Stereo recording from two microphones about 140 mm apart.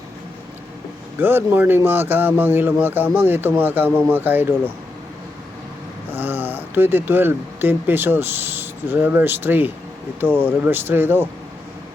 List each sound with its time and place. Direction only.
1.2 s speech: 15° right (ahead or behind)
6.1 s speech: 15° right (ahead or behind)